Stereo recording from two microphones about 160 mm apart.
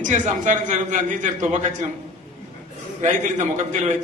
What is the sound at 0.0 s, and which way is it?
A man's voice, 50° right (ahead or behind).